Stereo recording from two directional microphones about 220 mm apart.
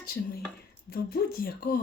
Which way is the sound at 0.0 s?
45° left (ahead or behind).